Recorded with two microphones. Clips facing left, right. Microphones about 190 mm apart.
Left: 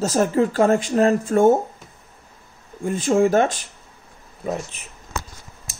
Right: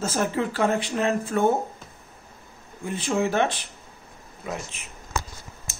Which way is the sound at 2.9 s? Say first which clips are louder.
Left 7 dB; 45° left (ahead or behind).